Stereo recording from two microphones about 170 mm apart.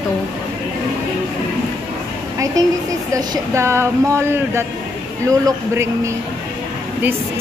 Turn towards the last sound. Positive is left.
turn(degrees=-20)  # may be behind; listen again after turning